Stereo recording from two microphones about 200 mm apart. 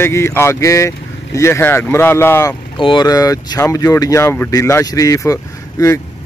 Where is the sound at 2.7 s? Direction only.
25° left (ahead or behind).